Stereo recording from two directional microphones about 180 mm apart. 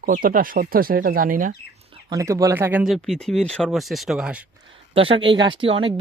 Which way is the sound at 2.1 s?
20° right (ahead or behind).